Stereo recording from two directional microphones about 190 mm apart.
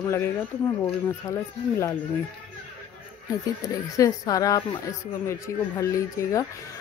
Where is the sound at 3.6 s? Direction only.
20° left (ahead or behind).